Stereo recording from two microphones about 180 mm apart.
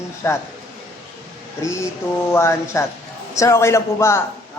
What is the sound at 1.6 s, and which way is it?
Mantra, 15° left (ahead or behind).